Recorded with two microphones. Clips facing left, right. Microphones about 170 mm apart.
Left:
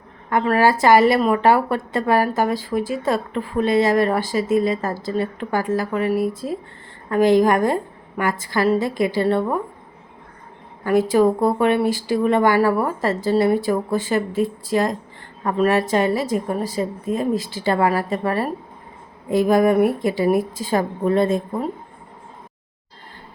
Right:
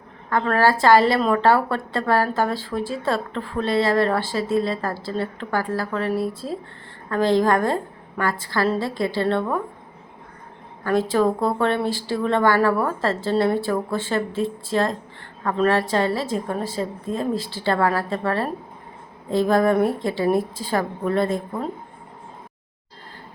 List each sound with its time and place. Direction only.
0.3 s a woman's voice: 15° left (ahead or behind)
10.8 s a woman's voice: 15° left (ahead or behind)